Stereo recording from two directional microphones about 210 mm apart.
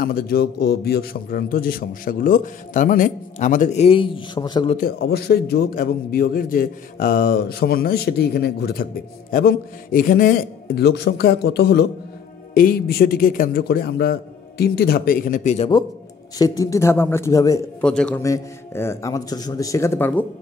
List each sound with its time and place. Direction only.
0.0 s a man's voice: 45° left (ahead or behind); by 4.7 s 20° left (ahead or behind)
4.7 s a man's voice: 45° left (ahead or behind)
16.3 s a man's voice: 15° left (ahead or behind)